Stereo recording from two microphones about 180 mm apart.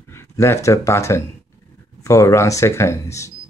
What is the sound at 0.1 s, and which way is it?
Speech, 15° left (ahead or behind).